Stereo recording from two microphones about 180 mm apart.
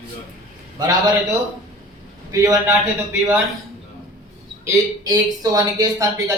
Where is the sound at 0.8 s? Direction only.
20° right (ahead or behind).